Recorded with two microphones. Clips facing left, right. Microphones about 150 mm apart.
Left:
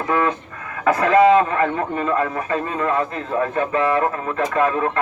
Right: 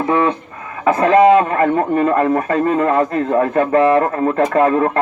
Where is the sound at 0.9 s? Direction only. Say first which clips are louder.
Right 3 dB; 40° right (ahead or behind).